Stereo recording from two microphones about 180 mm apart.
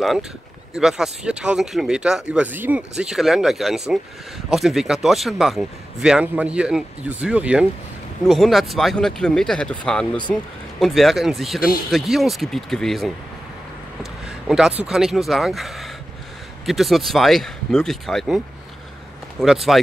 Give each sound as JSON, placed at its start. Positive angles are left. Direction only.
{"t": 0.7, "sound": "speech", "side_deg": 0}
{"t": 14.5, "sound": "speech", "side_deg": 0}
{"t": 19.4, "sound": "speech", "side_deg": 0}